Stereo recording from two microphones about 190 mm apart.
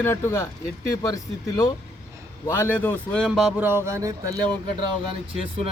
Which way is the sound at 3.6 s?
15° right (ahead or behind).